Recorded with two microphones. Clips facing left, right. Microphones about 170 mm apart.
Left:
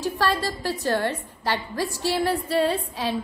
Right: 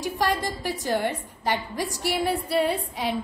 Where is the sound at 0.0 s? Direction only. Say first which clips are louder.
Left 1 dB; 15° right (ahead or behind).